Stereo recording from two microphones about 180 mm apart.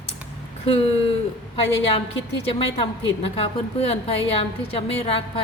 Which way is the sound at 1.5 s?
30° left (ahead or behind).